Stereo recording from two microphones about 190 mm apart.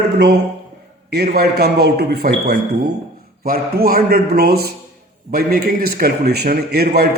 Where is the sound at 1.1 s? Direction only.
55° right (ahead or behind).